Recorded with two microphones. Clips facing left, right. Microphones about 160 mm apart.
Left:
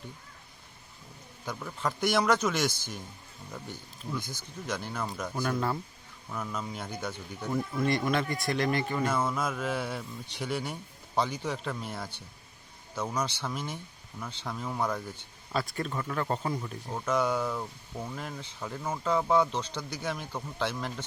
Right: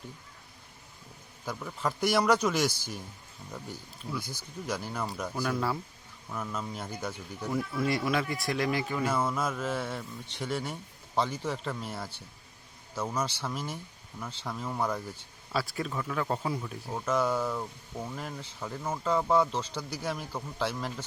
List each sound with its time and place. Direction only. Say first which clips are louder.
1.5 s speech: even; 5° right (ahead or behind)